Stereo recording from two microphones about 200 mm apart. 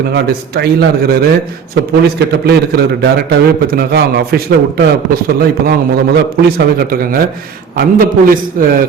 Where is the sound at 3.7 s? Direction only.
50° right (ahead or behind).